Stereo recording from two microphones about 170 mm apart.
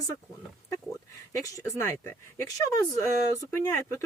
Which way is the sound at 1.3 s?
20° left (ahead or behind).